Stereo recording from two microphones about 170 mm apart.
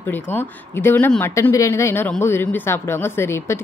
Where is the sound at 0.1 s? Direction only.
10° left (ahead or behind).